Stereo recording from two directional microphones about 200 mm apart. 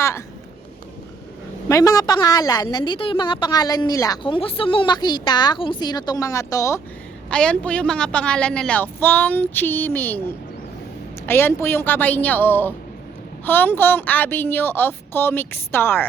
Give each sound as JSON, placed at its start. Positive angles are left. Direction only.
{"t": 1.6, "sound": "a woman's voice", "side_deg": 15}
{"t": 7.3, "sound": "a woman's voice", "side_deg": 5}